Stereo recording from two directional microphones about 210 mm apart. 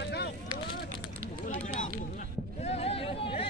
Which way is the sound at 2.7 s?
30° left (ahead or behind).